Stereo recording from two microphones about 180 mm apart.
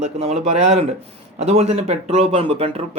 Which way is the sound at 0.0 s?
35° right (ahead or behind).